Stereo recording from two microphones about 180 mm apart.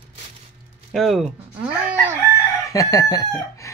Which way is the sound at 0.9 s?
Centre (ahead or behind).